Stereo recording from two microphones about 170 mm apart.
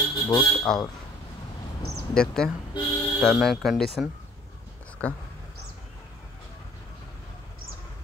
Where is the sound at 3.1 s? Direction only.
Centre (ahead or behind).